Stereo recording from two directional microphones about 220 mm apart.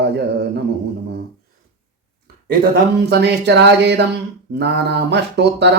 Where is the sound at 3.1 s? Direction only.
50° right (ahead or behind).